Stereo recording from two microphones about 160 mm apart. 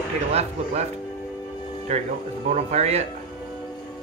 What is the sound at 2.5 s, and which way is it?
Speech, 45° right (ahead or behind).